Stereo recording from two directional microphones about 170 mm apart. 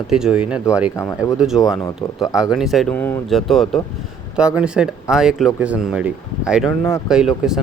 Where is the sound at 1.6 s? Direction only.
20° left (ahead or behind).